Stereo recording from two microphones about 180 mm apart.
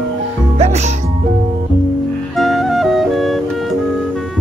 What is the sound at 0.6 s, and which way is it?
Music, 40° right (ahead or behind).